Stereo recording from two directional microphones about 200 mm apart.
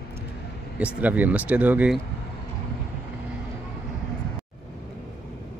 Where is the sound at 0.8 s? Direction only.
5° right (ahead or behind).